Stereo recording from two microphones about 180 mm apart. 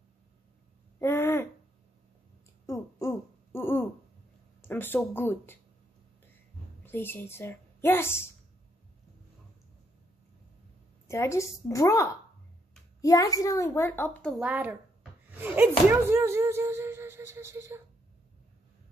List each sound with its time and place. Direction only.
0.9 s throat clearing: 15° left (ahead or behind)
2.6 s a sound: 15° left (ahead or behind)
4.6 s speech: 10° left (ahead or behind)
6.8 s a woman's voice: 10° left (ahead or behind)
11.1 s a child's voice: 15° left (ahead or behind)
14.4 s speech: 10° right (ahead or behind)